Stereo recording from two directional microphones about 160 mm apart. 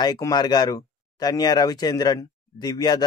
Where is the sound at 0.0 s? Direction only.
25° left (ahead or behind).